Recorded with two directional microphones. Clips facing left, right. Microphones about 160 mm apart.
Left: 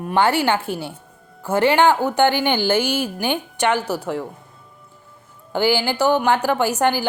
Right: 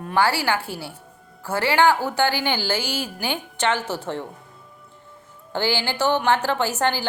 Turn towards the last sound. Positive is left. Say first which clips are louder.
# left 4 dB
turn(degrees=15)  # may be behind; listen again after turning